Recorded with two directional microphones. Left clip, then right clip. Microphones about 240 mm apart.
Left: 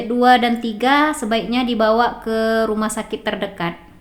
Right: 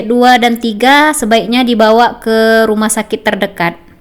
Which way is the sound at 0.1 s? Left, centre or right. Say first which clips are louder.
Right 6 dB; right.